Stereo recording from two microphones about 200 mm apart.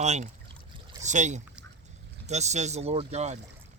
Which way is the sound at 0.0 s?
35° right (ahead or behind).